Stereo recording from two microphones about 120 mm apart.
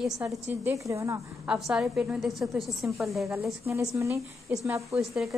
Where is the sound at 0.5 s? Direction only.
25° right (ahead or behind).